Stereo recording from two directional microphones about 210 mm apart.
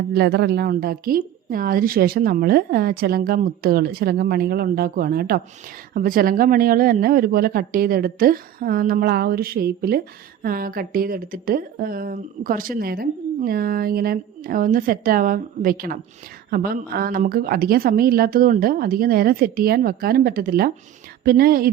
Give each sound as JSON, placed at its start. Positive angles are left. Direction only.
{"t": 0.1, "sound": "speech", "side_deg": -50}